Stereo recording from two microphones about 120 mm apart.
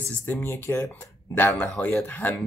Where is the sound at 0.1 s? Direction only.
15° left (ahead or behind).